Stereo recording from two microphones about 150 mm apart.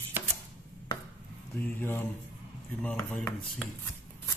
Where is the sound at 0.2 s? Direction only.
15° right (ahead or behind).